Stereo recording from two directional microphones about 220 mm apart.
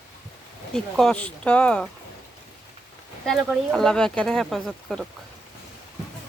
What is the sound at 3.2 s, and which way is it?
Speech, centre (ahead or behind).